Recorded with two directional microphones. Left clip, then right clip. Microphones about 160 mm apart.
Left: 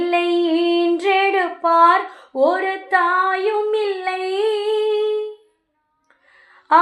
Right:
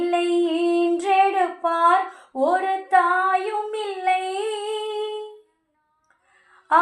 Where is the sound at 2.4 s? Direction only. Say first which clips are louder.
Left 3 dB; 30° left (ahead or behind).